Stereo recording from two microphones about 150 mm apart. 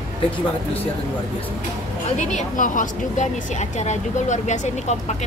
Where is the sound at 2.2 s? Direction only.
50° left (ahead or behind).